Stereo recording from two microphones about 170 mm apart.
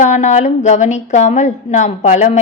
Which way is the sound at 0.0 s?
45° left (ahead or behind).